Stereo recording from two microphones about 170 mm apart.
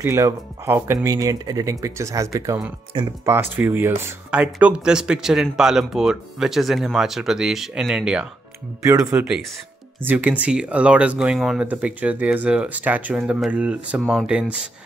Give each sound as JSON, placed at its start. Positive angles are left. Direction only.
{"t": 0.0, "sound": "speech", "side_deg": -15}
{"t": 3.3, "sound": "speech", "side_deg": -10}
{"t": 8.8, "sound": "speech", "side_deg": -20}
{"t": 9.1, "sound": "speech", "side_deg": -5}